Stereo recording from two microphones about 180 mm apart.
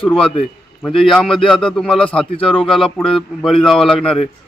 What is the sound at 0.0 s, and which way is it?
A man's voice, 5° left (ahead or behind).